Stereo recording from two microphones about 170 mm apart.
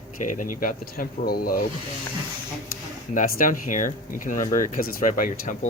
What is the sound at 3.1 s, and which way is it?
Speech, 50° left (ahead or behind).